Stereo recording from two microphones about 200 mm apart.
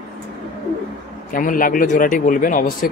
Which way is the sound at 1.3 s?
45° left (ahead or behind).